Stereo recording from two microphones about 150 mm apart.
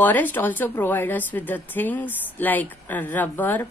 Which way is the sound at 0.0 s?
10° left (ahead or behind).